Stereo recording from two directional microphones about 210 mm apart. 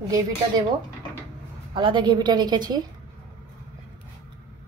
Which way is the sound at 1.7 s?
20° right (ahead or behind).